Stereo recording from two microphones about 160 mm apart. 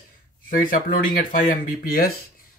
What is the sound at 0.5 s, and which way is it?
Speech, 60° left (ahead or behind).